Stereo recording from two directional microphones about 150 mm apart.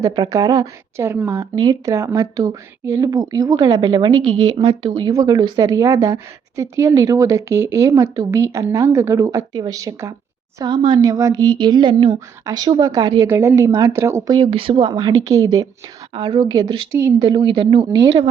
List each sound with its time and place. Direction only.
0.0 s speech: 25° right (ahead or behind)
13.3 s speech: 15° right (ahead or behind)
14.3 s speech: 35° right (ahead or behind)
17.2 s a woman's voice: 35° right (ahead or behind)